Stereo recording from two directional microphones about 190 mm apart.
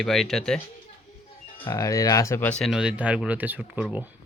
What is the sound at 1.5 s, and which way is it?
Speech, 25° left (ahead or behind).